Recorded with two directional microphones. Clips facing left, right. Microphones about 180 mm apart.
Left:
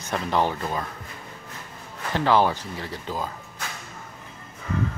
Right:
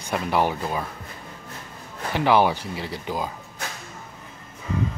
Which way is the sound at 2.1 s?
15° right (ahead or behind).